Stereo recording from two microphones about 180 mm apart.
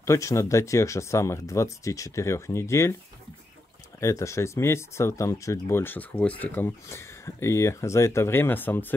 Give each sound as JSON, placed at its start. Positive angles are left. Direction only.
{"t": 0.0, "sound": "speech", "side_deg": 15}
{"t": 4.0, "sound": "speech", "side_deg": 15}